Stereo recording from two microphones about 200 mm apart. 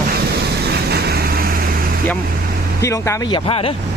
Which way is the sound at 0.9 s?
50° right (ahead or behind).